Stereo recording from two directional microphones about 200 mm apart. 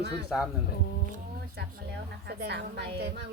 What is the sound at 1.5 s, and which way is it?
A woman's voice, 55° right (ahead or behind).